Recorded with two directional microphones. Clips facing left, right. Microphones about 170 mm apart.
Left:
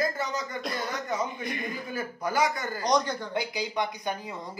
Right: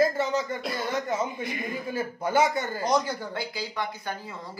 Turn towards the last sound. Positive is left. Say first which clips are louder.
# left 2 dB
turn(degrees=20)  # may be behind; listen again after turning